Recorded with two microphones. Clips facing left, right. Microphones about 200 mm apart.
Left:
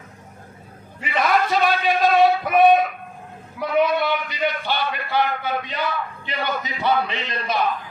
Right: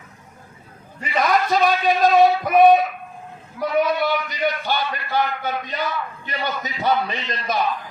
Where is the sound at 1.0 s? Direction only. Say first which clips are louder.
Even; 40° right (ahead or behind).